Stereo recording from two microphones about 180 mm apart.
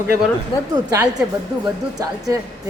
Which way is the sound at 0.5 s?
30° left (ahead or behind).